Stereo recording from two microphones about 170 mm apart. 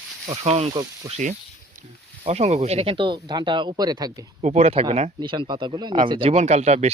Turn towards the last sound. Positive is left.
turn(degrees=-40)  # may be behind; listen again after turning